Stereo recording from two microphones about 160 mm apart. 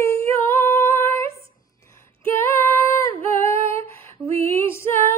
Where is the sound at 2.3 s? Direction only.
15° left (ahead or behind).